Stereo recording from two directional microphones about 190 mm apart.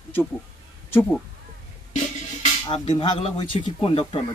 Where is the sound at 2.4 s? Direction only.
30° left (ahead or behind).